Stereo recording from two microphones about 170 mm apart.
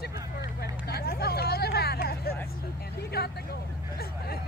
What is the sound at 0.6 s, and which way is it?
Vehicle, 65° left (ahead or behind).